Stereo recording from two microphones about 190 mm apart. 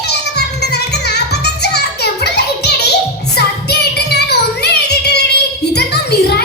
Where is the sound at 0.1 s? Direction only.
60° left (ahead or behind).